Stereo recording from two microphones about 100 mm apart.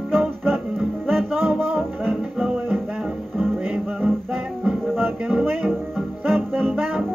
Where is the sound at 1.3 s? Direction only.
20° right (ahead or behind).